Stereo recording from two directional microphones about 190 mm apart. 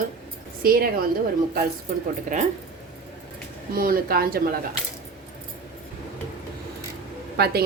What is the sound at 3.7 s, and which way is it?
Speech, 50° right (ahead or behind).